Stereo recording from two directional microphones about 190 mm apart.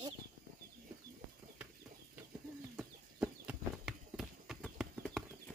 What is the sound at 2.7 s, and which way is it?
Horse, 5° right (ahead or behind).